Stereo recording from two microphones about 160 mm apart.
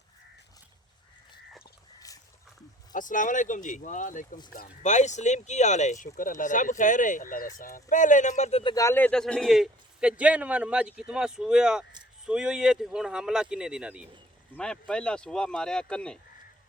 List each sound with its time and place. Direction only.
2.9 s speech: 55° left (ahead or behind); by 8.7 s 40° left (ahead or behind)
8.7 s a man's voice: 20° left (ahead or behind); by 14.1 s 5° right (ahead or behind)
14.5 s a man's voice: 5° left (ahead or behind)